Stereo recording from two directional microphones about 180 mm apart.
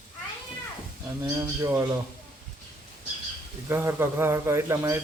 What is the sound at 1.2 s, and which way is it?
Speech, 15° right (ahead or behind).